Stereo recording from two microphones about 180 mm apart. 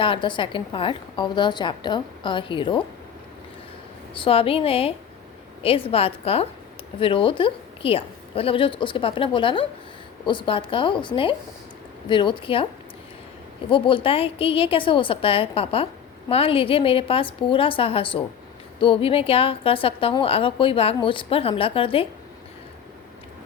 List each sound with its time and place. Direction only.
0.0 s a woman's voice: 30° left (ahead or behind)
4.1 s a woman's voice: 30° left (ahead or behind)
13.7 s a woman's voice: 30° left (ahead or behind)